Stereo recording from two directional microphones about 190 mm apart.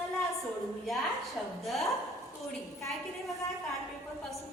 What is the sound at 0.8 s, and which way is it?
A woman's voice, centre (ahead or behind).